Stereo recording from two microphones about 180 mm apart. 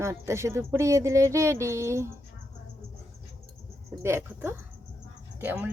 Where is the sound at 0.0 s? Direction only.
15° right (ahead or behind).